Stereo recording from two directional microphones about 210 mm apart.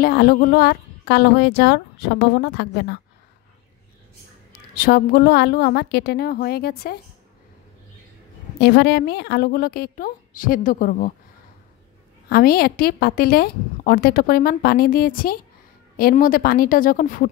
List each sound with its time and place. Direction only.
0.0 s a woman's voice: 45° left (ahead or behind)
4.5 s a woman's voice: 45° left (ahead or behind)
8.5 s a woman's voice: 50° left (ahead or behind)
12.3 s a woman's voice: 45° left (ahead or behind)